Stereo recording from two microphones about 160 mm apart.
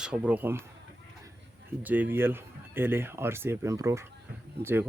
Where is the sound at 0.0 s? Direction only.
5° right (ahead or behind).